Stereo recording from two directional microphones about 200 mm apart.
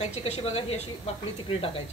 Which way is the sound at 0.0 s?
30° left (ahead or behind).